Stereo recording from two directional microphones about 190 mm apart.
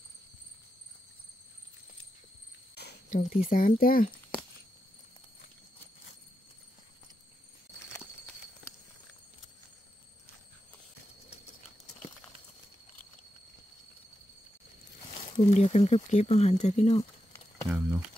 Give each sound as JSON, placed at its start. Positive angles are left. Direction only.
{"t": 2.7, "sound": "a sound", "side_deg": 60}
{"t": 3.2, "sound": "speech", "side_deg": 45}
{"t": 15.5, "sound": "speech", "side_deg": 35}
{"t": 17.6, "sound": "speech", "side_deg": -5}